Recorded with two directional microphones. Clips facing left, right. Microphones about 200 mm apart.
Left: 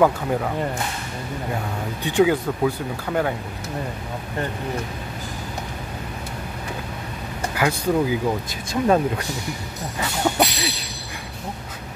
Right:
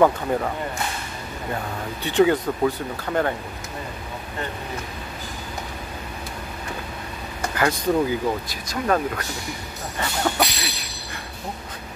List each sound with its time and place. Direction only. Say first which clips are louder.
0.0 s speech: even; centre (ahead or behind)
2.0 s speech: even; 10° left (ahead or behind)
7.5 s speech: even; 10° left (ahead or behind)
8.5 s speech: left 4 dB; 20° left (ahead or behind)
9.9 s speech: left 2 dB; 10° left (ahead or behind)